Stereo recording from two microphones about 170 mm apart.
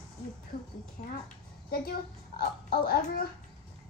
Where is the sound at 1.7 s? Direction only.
60° left (ahead or behind).